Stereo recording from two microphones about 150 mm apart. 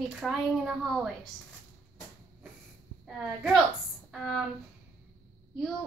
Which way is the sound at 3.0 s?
5° right (ahead or behind).